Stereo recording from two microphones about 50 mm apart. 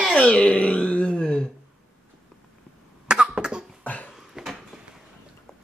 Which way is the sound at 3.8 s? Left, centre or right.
Left.